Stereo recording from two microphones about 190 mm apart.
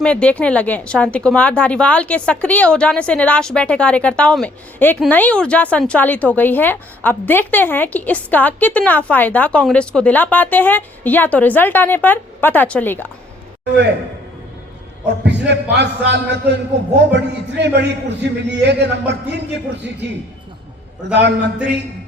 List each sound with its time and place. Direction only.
0.0 s speech: 5° left (ahead or behind)
15.2 s a man's voice: 65° right (ahead or behind)
21.1 s a man's voice: 65° right (ahead or behind)